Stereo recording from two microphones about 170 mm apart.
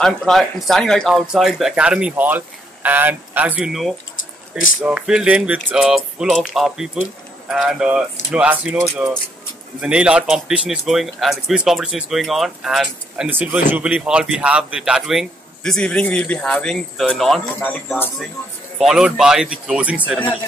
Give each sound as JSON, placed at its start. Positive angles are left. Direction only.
{"t": 0.0, "sound": "speech", "side_deg": 0}
{"t": 4.8, "sound": "a sound", "side_deg": -5}
{"t": 5.7, "sound": "speech", "side_deg": -5}
{"t": 8.9, "sound": "a sound", "side_deg": -10}
{"t": 9.8, "sound": "speech", "side_deg": -5}
{"t": 18.8, "sound": "speech", "side_deg": 0}